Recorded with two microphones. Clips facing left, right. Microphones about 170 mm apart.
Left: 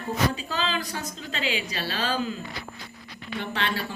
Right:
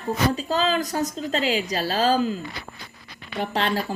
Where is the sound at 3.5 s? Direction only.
40° right (ahead or behind).